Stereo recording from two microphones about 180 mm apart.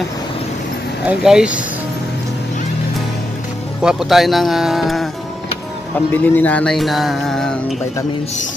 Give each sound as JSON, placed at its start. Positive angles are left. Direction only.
{"t": 1.0, "sound": "music", "side_deg": -5}
{"t": 3.8, "sound": "music", "side_deg": 0}